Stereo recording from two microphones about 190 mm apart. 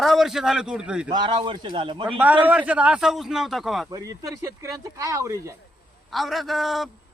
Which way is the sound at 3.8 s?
20° right (ahead or behind).